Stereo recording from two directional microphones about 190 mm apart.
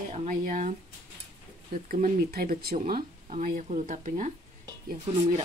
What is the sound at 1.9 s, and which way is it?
Speech, 50° right (ahead or behind).